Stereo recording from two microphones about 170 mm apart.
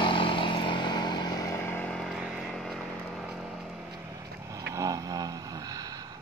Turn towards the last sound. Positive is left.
turn(degrees=-20)  # may be behind; listen again after turning